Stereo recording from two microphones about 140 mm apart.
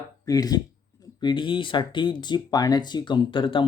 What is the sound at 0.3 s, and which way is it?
Speech, 25° left (ahead or behind).